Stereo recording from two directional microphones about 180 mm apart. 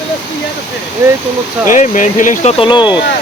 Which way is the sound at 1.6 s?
45° left (ahead or behind).